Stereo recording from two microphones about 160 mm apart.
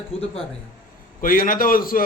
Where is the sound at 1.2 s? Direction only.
60° left (ahead or behind).